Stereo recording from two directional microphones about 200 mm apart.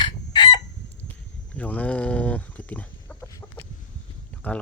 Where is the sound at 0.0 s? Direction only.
20° left (ahead or behind).